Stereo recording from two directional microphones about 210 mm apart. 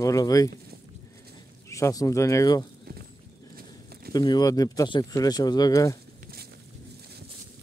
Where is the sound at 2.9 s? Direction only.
45° right (ahead or behind).